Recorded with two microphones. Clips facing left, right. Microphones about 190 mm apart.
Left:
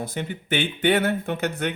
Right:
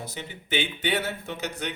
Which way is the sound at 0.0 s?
55° left (ahead or behind).